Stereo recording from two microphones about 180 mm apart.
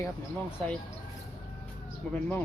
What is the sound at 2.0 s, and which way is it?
Speech, 5° left (ahead or behind).